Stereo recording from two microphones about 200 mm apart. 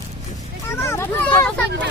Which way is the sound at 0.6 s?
15° left (ahead or behind).